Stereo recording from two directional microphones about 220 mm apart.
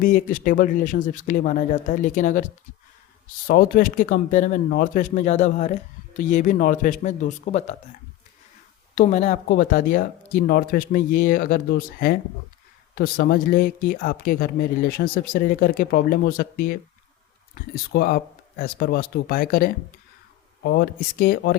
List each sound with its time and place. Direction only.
0.0 s speech: 35° left (ahead or behind)
9.0 s speech: 35° left (ahead or behind)